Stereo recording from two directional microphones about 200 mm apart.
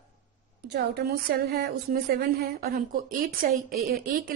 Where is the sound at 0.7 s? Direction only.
60° right (ahead or behind).